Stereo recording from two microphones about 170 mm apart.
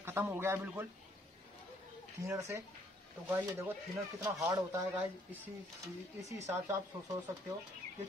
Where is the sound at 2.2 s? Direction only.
15° right (ahead or behind).